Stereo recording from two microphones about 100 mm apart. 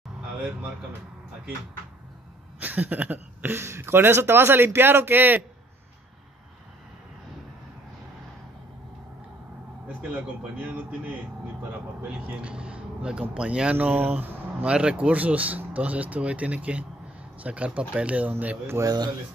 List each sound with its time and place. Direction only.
2.6 s speech: 15° right (ahead or behind)
10.8 s speech: 15° right (ahead or behind)
12.3 s speech: 10° right (ahead or behind)
18.8 s speech: 40° right (ahead or behind)